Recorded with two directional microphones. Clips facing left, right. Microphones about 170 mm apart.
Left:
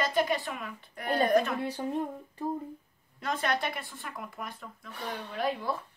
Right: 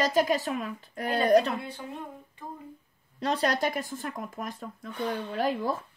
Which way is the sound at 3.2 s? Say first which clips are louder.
Right 4 dB; 35° right (ahead or behind).